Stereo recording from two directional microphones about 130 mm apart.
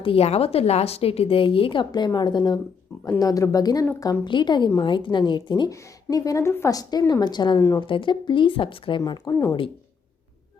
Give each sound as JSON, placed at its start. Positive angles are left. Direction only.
{"t": 0.0, "sound": "a woman's voice", "side_deg": 50}